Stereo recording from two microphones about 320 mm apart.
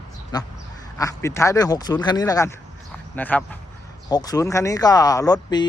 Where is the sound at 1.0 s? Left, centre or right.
Centre.